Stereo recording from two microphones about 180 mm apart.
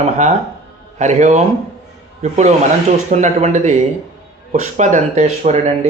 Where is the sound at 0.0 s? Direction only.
40° right (ahead or behind).